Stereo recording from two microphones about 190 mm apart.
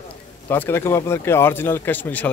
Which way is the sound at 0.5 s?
10° left (ahead or behind).